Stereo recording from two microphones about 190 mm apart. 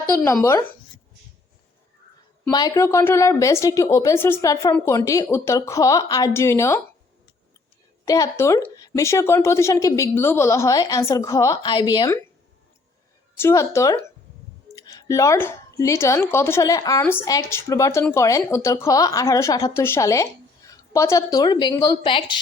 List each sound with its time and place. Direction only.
0.3 s speech: 15° left (ahead or behind)
2.5 s speech: 20° left (ahead or behind)
8.0 s speech: 15° left (ahead or behind)
13.3 s a woman's voice: 15° left (ahead or behind)